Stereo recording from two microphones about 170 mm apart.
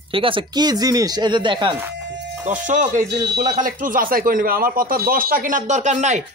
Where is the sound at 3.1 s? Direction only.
80° right.